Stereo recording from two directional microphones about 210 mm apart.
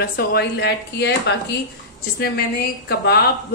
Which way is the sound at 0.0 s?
45° left (ahead or behind).